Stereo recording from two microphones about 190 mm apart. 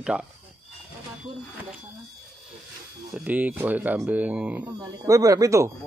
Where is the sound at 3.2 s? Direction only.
10° right (ahead or behind).